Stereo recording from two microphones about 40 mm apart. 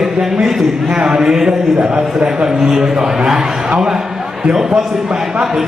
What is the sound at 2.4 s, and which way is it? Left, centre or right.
A man's voice, centre.